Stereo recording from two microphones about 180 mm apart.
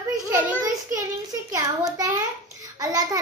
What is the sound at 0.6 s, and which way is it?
A child's voice, 20° right (ahead or behind).